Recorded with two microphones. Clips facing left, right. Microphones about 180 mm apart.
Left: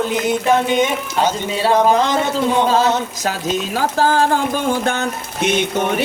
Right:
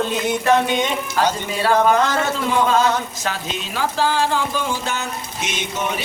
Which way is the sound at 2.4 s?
30° left (ahead or behind).